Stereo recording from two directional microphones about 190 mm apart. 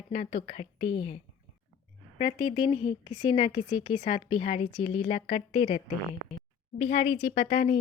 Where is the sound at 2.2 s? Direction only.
45° left (ahead or behind).